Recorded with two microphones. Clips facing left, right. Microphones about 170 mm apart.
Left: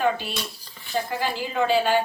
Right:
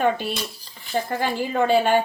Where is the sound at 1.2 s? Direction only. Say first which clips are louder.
Right 4 dB; 50° right (ahead or behind).